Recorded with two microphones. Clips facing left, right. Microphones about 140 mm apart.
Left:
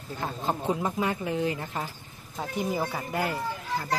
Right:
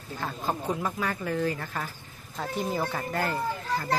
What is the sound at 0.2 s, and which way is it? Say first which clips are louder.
Speech: left 1 dB; 20° left (ahead or behind).